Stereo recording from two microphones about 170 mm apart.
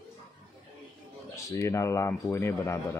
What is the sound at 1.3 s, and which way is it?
Speech, 15° left (ahead or behind).